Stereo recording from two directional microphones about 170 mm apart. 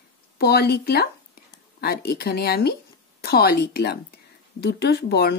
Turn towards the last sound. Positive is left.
turn(degrees=70)  # may be behind; listen again after turning